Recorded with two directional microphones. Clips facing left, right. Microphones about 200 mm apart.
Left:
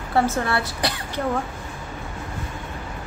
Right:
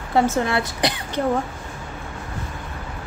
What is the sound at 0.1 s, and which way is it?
A woman's voice, 20° right (ahead or behind).